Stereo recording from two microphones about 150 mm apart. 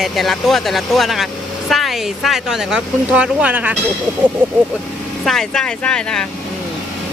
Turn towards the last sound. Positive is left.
turn(degrees=5)  # may be behind; listen again after turning